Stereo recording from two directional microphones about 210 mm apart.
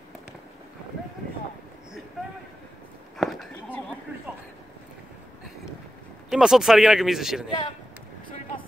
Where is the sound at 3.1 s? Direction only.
Centre (ahead or behind).